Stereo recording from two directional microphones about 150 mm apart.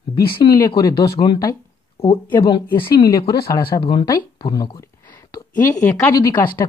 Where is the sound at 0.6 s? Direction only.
25° left (ahead or behind).